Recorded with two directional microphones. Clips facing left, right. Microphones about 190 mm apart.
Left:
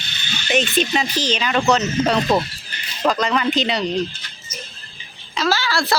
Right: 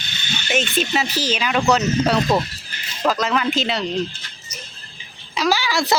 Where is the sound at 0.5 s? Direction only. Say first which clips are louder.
Left 2 dB; centre (ahead or behind).